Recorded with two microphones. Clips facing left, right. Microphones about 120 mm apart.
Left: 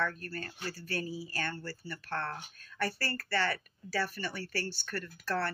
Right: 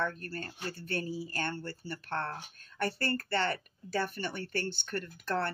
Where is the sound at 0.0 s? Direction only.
25° right (ahead or behind).